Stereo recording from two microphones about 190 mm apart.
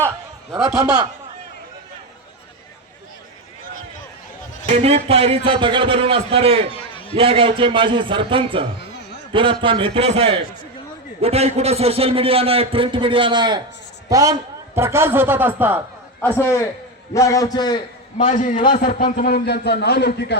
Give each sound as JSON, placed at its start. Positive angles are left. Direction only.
{"t": 4.7, "sound": "a man's voice", "side_deg": -30}
{"t": 6.9, "sound": "a sound", "side_deg": 30}
{"t": 7.2, "sound": "a man's voice", "side_deg": -30}
{"t": 16.2, "sound": "a man's voice", "side_deg": 10}
{"t": 18.2, "sound": "a man's voice", "side_deg": 40}
{"t": 18.7, "sound": "a man's voice", "side_deg": 50}